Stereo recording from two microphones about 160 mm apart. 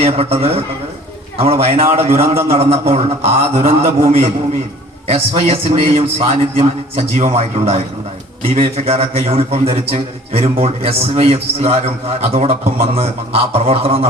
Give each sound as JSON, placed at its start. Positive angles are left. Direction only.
{"t": 0.0, "sound": "a man's voice", "side_deg": -40}